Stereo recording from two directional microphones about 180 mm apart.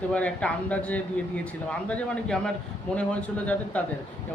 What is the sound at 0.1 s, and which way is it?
A man's voice, 5° left (ahead or behind).